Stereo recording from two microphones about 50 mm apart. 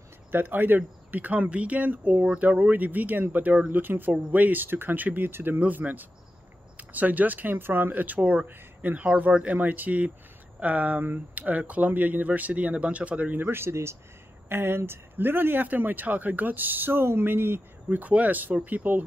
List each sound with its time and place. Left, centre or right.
0.3 s speech: right
3.8 s speech: right
4.1 s speech: right
13.4 s speech: right
14.5 s speech: right
17.8 s speech: right